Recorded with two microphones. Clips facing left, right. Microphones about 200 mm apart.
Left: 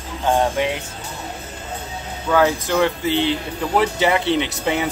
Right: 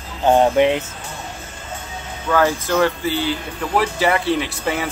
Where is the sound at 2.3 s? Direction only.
15° left (ahead or behind).